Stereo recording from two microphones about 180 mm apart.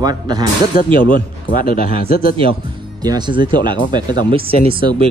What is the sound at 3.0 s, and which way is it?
Speech, 20° right (ahead or behind).